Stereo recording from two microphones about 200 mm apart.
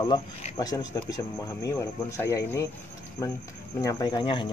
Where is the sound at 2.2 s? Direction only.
15° left (ahead or behind).